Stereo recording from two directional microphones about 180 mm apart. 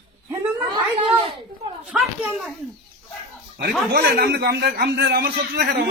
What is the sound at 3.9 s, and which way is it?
A man's voice, 60° right (ahead or behind).